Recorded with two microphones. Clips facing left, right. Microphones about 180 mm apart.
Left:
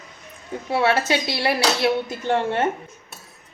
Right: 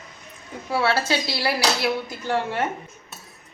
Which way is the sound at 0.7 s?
20° left (ahead or behind).